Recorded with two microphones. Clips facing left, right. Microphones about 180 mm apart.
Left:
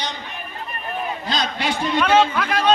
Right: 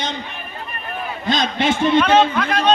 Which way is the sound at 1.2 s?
25° right (ahead or behind).